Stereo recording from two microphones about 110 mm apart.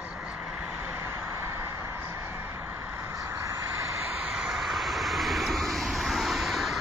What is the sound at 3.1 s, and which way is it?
Vehicle, 30° right (ahead or behind).